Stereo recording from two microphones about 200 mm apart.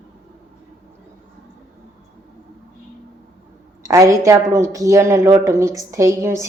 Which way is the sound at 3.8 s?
15° right (ahead or behind).